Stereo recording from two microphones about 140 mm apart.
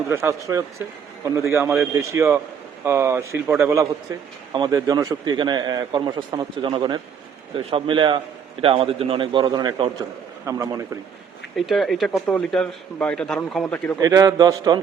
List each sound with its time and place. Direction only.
0.1 s a man's voice: 20° right (ahead or behind)
4.5 s a man's voice: 30° right (ahead or behind)
10.4 s a man's voice: 25° right (ahead or behind)
11.5 s a man's voice: centre (ahead or behind)
14.0 s a man's voice: 25° right (ahead or behind)